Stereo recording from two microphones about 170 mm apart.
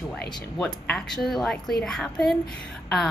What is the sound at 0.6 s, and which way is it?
A woman's voice, 5° left (ahead or behind).